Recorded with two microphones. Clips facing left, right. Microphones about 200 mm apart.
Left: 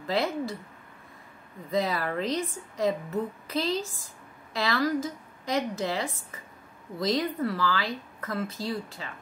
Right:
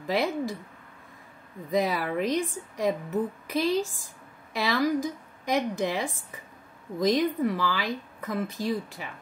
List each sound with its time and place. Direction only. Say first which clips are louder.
0.0 s speech: right 1 dB; 15° right (ahead or behind)
1.7 s speech: right 2 dB; 15° right (ahead or behind)